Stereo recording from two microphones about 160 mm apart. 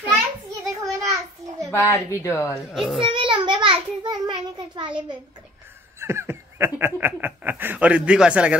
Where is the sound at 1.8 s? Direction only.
15° left (ahead or behind).